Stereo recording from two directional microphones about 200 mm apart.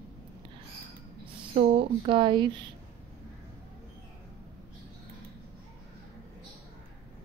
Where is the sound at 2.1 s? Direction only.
25° right (ahead or behind).